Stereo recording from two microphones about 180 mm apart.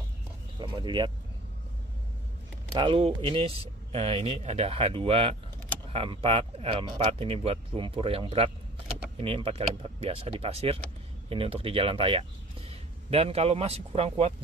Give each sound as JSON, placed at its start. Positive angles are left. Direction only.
{"t": 0.6, "sound": "speech", "side_deg": -25}
{"t": 2.8, "sound": "speech", "side_deg": -25}